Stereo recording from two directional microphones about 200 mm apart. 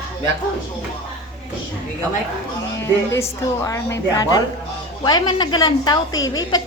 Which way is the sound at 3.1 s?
15° left (ahead or behind).